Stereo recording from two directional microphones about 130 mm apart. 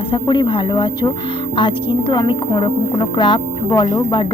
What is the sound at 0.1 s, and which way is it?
A woman's voice, 35° left (ahead or behind).